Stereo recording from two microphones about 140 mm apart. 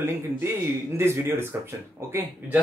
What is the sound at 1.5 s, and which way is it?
Speech, 15° right (ahead or behind).